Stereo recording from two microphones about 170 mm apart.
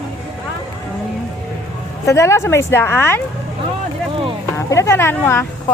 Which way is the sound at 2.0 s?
15° left (ahead or behind).